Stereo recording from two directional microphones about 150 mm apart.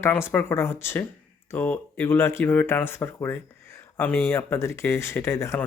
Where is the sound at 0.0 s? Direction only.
15° left (ahead or behind).